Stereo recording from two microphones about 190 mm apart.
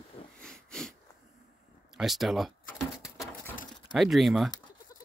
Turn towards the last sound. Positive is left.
turn(degrees=0)  # may be behind; listen again after turning